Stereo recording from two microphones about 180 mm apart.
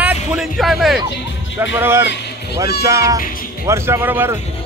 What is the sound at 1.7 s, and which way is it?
Speech, 10° right (ahead or behind).